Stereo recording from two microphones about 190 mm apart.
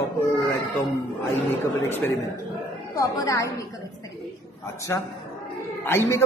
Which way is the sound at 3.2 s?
15° left (ahead or behind).